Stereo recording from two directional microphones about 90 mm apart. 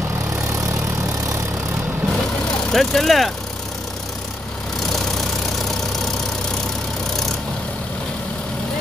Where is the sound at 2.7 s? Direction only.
5° left (ahead or behind).